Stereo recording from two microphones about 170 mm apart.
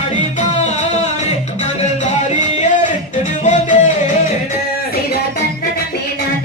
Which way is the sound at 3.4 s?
45° left (ahead or behind).